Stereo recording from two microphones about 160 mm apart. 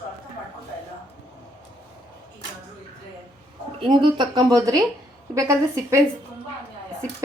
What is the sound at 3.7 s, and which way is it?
Speech, 30° right (ahead or behind).